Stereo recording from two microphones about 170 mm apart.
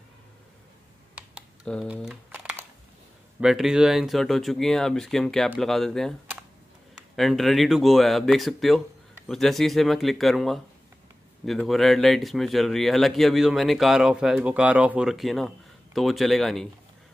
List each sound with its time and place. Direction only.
1.1 s computer keyboard: 5° right (ahead or behind)
3.3 s speech: 5° right (ahead or behind)
7.2 s speech: centre (ahead or behind)